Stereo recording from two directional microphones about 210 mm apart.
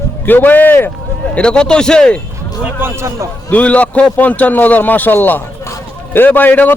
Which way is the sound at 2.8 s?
15° right (ahead or behind).